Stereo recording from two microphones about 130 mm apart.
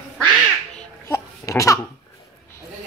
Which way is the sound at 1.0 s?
20° left (ahead or behind).